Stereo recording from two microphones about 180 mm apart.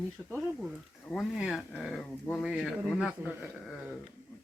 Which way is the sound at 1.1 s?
Centre (ahead or behind).